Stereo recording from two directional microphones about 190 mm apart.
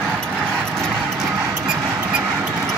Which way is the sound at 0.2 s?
Centre (ahead or behind).